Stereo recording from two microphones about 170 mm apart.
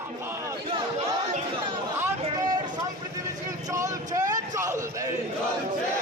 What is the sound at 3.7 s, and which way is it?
Vehicle, 20° right (ahead or behind).